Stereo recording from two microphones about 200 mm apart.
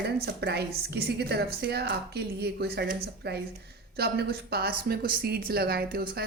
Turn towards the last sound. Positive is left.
turn(degrees=-50)  # may be behind; listen again after turning